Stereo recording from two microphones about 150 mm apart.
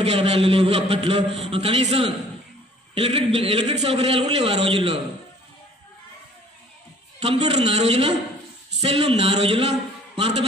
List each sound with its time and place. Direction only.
0.0 s a man's voice: 45° right (ahead or behind)
7.2 s a man's voice: 45° right (ahead or behind)